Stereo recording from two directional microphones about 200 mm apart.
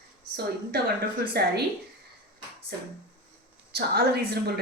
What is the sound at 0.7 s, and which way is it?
Speech, 50° right (ahead or behind).